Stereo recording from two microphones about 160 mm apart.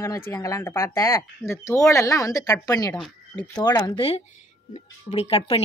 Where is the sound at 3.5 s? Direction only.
25° left (ahead or behind).